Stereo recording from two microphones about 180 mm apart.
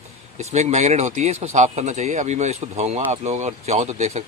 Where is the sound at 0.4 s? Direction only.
35° right (ahead or behind).